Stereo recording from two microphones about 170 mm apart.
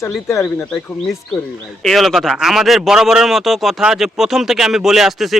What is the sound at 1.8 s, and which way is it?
Speech, centre (ahead or behind).